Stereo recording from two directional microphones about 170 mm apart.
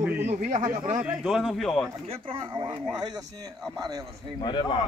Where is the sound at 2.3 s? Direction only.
30° right (ahead or behind).